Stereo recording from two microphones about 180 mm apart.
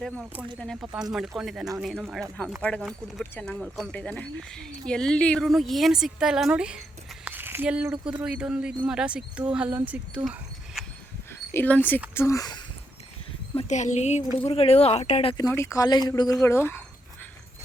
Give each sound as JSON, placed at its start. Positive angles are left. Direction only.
{"t": 0.0, "sound": "a woman's voice", "side_deg": -5}
{"t": 11.5, "sound": "speech", "side_deg": 10}
{"t": 13.6, "sound": "speech", "side_deg": 40}
{"t": 15.5, "sound": "speech", "side_deg": 15}